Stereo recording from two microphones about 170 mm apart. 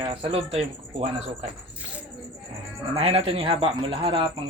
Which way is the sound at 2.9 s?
35° right (ahead or behind).